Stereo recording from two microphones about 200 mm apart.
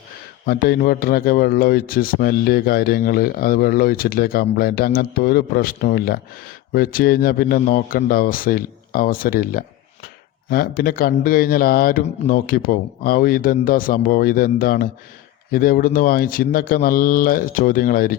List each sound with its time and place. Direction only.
0.4 s a man's voice: 50° left (ahead or behind)